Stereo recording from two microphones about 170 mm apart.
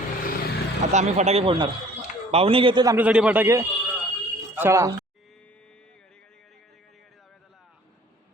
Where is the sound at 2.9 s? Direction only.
10° right (ahead or behind).